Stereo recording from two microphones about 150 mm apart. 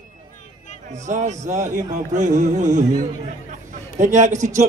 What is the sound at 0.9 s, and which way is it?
Speech, 55° right (ahead or behind).